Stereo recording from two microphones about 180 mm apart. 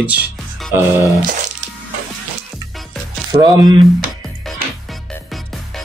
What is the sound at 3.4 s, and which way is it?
Speech, 25° right (ahead or behind).